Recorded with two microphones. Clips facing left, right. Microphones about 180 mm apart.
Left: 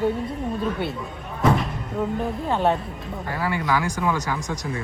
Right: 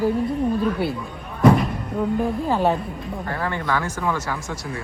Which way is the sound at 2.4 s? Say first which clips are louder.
Left 2 dB; centre (ahead or behind).